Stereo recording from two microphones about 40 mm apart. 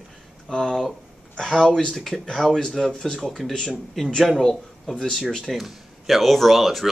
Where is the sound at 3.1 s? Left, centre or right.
Centre.